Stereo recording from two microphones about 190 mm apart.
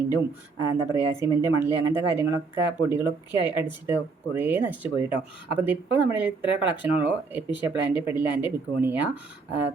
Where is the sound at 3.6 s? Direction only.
10° right (ahead or behind).